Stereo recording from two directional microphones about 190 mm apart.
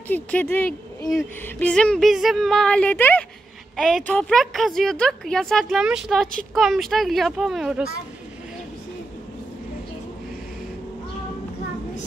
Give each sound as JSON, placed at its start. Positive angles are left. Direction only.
{"t": 0.1, "sound": "speech", "side_deg": 10}